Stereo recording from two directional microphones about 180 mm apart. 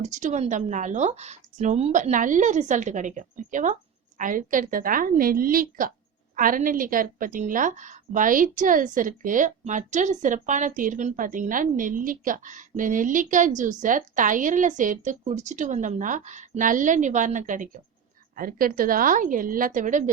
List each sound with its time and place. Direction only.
0.0 s a woman's voice: 40° right (ahead or behind)